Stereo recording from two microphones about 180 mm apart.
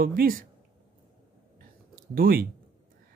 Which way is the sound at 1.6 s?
55° right (ahead or behind).